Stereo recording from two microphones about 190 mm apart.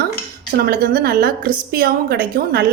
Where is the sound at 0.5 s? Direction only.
55° right (ahead or behind).